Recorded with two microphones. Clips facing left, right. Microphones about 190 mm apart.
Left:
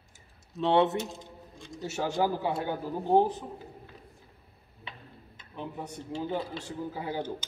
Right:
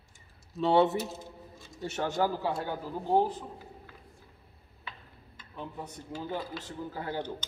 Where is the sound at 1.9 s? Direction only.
10° left (ahead or behind).